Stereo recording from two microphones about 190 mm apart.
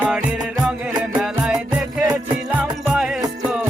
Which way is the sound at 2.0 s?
20° right (ahead or behind).